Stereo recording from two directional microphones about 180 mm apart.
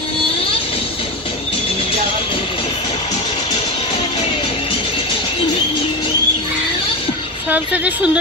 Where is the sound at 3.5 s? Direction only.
35° left (ahead or behind).